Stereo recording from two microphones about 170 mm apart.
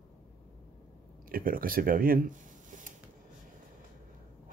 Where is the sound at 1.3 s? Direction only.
55° right (ahead or behind).